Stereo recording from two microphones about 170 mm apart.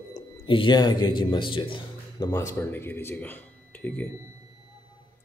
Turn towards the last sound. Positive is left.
turn(degrees=10)  # may be behind; listen again after turning